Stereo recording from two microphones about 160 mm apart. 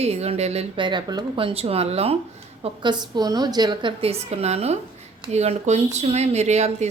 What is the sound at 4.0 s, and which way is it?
A woman's voice, 40° right (ahead or behind).